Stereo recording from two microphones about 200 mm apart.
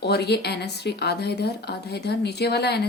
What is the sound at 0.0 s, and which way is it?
A woman's voice, 55° left (ahead or behind).